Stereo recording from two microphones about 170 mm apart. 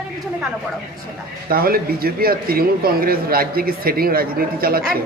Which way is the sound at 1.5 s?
60° right (ahead or behind).